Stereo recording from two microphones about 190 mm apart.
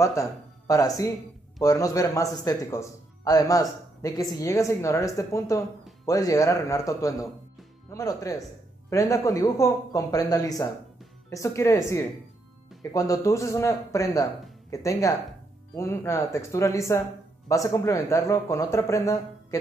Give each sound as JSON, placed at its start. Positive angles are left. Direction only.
{"t": 0.0, "sound": "speech", "side_deg": 15}